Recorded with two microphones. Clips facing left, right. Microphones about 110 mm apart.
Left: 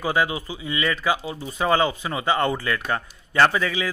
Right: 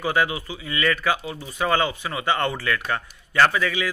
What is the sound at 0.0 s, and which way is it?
Speech, 20° left (ahead or behind).